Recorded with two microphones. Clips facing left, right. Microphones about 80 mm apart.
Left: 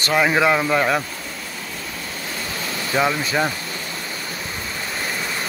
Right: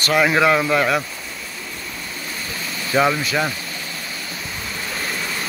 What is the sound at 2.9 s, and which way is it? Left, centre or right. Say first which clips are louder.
Speech: right 3 dB; centre.